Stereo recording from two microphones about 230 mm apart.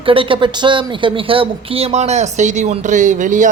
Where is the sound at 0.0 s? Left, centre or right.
Right.